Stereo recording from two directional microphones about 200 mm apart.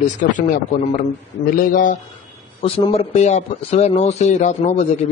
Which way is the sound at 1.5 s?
40° left (ahead or behind).